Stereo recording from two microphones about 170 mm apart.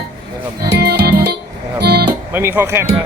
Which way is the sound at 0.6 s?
75° right (ahead or behind).